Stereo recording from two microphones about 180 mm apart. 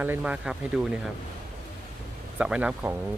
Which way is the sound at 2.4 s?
5° right (ahead or behind).